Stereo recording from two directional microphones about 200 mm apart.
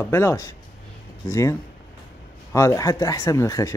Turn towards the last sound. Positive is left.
turn(degrees=15)  # may be behind; listen again after turning